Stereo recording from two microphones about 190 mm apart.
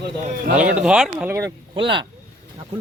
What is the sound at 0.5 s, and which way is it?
A man's voice, 5° right (ahead or behind).